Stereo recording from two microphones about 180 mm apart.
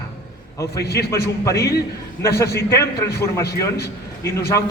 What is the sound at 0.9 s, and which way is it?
A man's voice, 15° left (ahead or behind).